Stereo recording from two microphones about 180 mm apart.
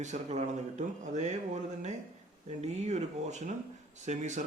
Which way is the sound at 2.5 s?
40° right (ahead or behind).